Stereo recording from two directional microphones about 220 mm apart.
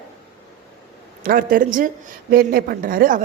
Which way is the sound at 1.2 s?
40° right (ahead or behind).